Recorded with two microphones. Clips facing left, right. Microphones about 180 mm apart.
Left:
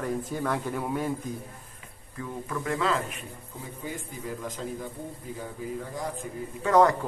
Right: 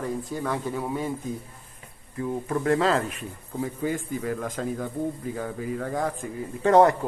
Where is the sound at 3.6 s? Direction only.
75° right (ahead or behind).